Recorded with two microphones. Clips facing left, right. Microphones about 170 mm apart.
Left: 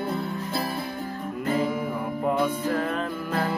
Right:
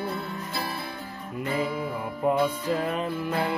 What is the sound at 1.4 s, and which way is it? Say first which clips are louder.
Music: left 3 dB; 45° left (ahead or behind).